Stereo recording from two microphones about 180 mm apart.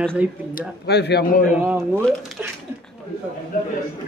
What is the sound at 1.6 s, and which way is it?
Speech, 10° right (ahead or behind).